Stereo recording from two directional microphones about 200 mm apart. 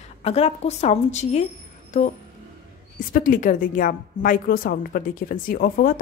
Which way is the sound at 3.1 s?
40° left (ahead or behind).